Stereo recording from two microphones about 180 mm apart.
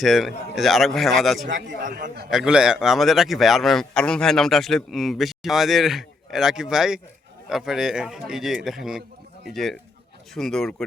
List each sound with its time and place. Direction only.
0.0 s speech: centre (ahead or behind)
1.6 s speech: 45° right (ahead or behind)
2.3 s speech: 5° right (ahead or behind)